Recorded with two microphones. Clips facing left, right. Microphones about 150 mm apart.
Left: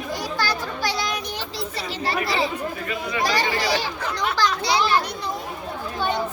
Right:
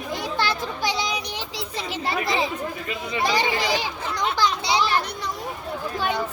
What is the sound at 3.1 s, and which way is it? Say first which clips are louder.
A child's voice: right 1 dB; 20° right (ahead or behind).